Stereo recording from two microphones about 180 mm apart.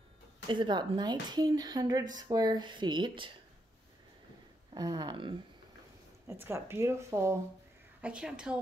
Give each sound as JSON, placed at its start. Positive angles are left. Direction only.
{"t": 0.5, "sound": "a woman's voice", "side_deg": -25}
{"t": 4.7, "sound": "a woman's voice", "side_deg": -20}
{"t": 6.2, "sound": "a woman's voice", "side_deg": -15}